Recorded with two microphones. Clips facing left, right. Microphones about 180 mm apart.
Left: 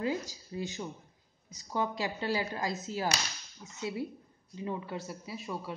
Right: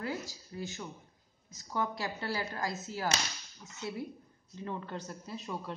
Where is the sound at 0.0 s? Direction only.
15° left (ahead or behind).